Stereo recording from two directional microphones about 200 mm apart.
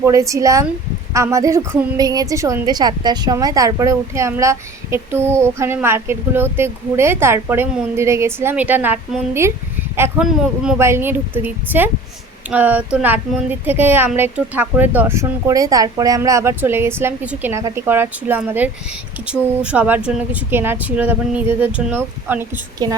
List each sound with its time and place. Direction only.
0.0 s a woman's voice: 15° right (ahead or behind)